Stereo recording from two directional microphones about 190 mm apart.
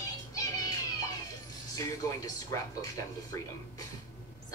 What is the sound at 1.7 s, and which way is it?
Speech, 20° left (ahead or behind).